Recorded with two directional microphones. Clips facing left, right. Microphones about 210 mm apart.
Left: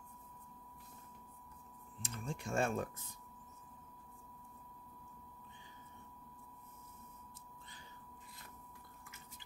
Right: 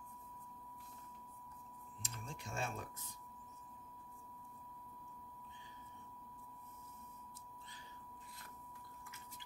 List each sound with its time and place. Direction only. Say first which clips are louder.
2.0 s typing: left 7 dB; 50° left (ahead or behind)